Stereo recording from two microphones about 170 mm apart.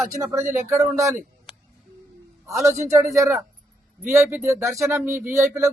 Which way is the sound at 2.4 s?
15° right (ahead or behind).